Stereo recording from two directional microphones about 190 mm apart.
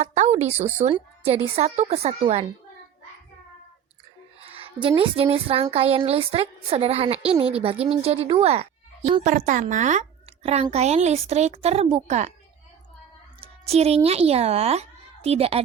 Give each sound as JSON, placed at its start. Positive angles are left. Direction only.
{"t": 0.0, "sound": "a woman's voice", "side_deg": -35}
{"t": 4.4, "sound": "a woman's voice", "side_deg": -30}
{"t": 13.4, "sound": "a child's voice", "side_deg": -35}